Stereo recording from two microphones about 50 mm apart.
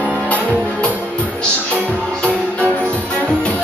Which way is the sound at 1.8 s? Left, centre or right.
Left.